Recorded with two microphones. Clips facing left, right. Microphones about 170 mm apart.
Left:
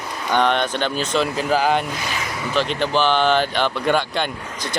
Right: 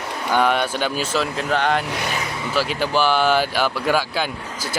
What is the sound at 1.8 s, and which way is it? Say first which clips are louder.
Speech: right 2 dB; 70° right (ahead or behind).